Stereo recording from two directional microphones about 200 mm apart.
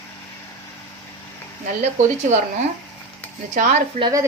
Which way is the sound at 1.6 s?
40° right (ahead or behind).